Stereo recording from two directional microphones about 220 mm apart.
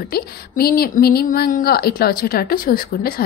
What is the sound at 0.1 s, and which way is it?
Speech, 45° left (ahead or behind).